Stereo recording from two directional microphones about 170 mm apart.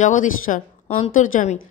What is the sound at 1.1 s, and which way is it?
Speech, 50° left (ahead or behind).